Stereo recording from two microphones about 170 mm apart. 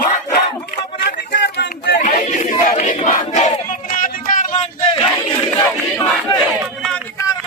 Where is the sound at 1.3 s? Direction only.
90° left.